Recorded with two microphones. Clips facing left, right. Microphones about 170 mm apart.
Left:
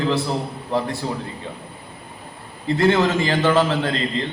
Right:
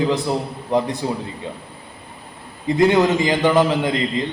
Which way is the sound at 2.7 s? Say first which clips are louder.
Right 2 dB; 15° right (ahead or behind).